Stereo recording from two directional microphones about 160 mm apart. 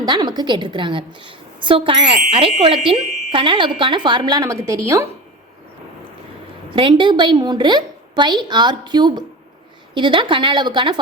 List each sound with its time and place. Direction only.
0.0 s a woman's voice: 25° right (ahead or behind)
6.7 s a woman's voice: 30° right (ahead or behind)